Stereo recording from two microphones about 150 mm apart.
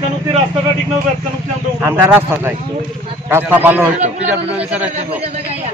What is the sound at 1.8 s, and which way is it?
Speech, 10° right (ahead or behind).